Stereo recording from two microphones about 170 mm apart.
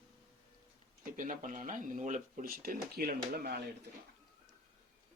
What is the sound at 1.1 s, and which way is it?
Speech, 50° right (ahead or behind).